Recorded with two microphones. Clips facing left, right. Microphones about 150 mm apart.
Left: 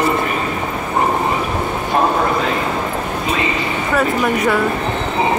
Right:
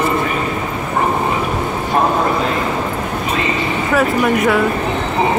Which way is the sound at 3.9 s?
Centre (ahead or behind).